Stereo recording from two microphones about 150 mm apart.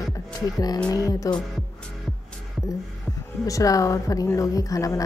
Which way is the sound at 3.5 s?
20° left (ahead or behind).